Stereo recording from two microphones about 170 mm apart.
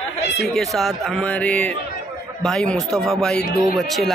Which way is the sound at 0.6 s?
Centre (ahead or behind).